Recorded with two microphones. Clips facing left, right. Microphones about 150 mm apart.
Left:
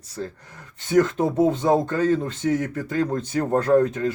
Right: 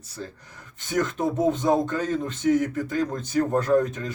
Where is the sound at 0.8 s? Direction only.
30° left (ahead or behind).